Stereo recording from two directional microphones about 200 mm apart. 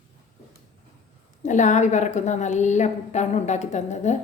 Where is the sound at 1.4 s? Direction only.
35° left (ahead or behind).